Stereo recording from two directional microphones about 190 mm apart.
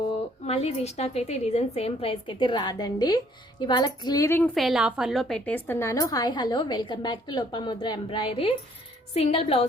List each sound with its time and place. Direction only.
0.4 s a woman's voice: 30° left (ahead or behind); by 4.4 s 15° left (ahead or behind)
4.5 s a woman's voice: centre (ahead or behind); by 9.6 s 30° left (ahead or behind)